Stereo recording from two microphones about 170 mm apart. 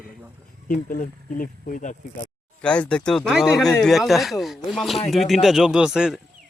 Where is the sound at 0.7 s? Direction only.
55° left (ahead or behind).